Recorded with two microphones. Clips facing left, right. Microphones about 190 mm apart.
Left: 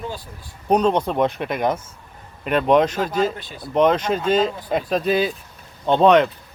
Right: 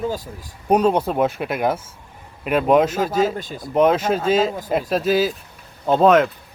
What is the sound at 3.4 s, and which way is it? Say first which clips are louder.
Speech: right 4 dB; 45° right (ahead or behind).